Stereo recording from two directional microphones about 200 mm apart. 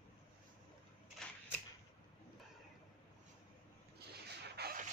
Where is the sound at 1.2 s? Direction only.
5° left (ahead or behind).